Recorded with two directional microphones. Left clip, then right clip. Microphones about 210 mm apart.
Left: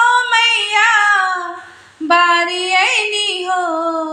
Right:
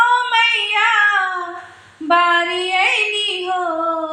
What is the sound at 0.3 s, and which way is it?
Child singing, 40° left (ahead or behind).